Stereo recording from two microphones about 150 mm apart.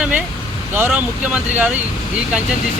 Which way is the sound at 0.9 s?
10° right (ahead or behind).